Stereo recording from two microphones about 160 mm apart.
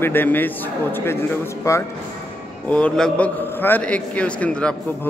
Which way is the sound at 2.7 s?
5° left (ahead or behind).